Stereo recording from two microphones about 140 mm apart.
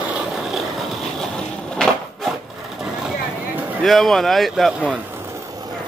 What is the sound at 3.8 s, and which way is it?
Speech, centre (ahead or behind).